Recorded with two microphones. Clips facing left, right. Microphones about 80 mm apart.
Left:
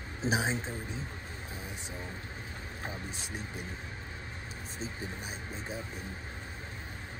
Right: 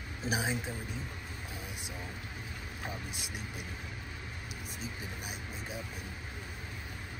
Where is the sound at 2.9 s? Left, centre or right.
Left.